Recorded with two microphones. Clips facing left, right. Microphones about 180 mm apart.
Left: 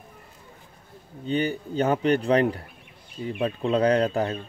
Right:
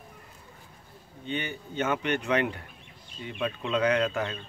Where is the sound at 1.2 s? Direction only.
35° left (ahead or behind).